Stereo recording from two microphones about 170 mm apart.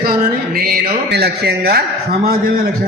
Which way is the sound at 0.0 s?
65° right (ahead or behind).